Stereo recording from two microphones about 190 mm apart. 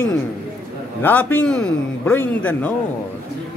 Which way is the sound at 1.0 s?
10° left (ahead or behind).